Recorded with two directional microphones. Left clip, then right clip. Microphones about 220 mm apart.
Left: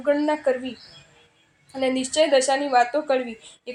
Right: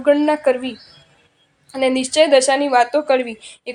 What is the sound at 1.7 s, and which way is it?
A woman's voice, 30° right (ahead or behind).